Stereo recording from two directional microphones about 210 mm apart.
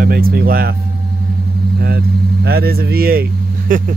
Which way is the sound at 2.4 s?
45° right (ahead or behind).